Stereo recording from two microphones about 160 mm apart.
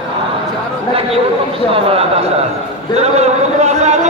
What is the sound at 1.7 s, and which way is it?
Speech, 35° right (ahead or behind).